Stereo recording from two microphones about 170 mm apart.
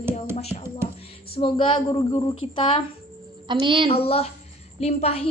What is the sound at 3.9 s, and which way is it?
A woman's voice, 35° left (ahead or behind).